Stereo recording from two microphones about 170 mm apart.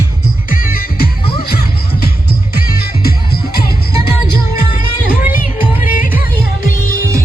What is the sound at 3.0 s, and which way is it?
Music, 60° left (ahead or behind).